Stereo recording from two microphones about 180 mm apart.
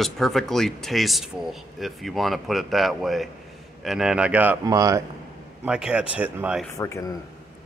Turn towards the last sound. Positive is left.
turn(degrees=15)  # may be behind; listen again after turning